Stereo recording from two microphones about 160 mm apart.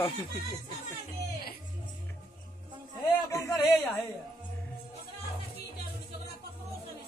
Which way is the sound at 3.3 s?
15° left (ahead or behind).